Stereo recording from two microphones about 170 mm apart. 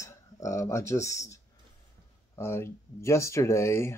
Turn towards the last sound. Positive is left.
turn(degrees=15)  # may be behind; listen again after turning